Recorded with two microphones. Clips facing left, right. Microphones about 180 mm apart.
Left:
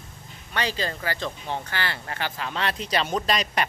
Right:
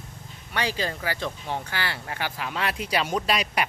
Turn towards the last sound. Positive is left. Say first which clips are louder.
# even
turn(degrees=-5)  # may be behind; listen again after turning